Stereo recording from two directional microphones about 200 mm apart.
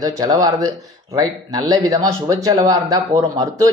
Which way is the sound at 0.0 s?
20° right (ahead or behind).